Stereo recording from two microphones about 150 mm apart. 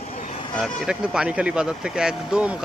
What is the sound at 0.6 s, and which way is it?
Speech, 5° right (ahead or behind).